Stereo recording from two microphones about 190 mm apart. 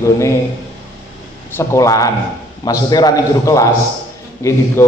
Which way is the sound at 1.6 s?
15° left (ahead or behind).